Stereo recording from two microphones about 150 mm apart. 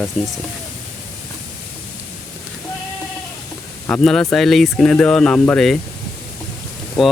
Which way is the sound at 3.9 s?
5° left (ahead or behind).